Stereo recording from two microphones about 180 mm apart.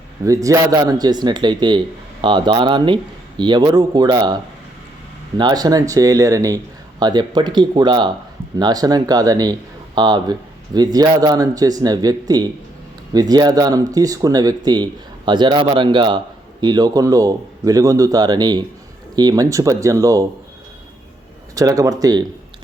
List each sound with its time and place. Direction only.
0.3 s speech: 20° right (ahead or behind)
5.4 s speech: 25° right (ahead or behind)
21.5 s speech: 20° right (ahead or behind)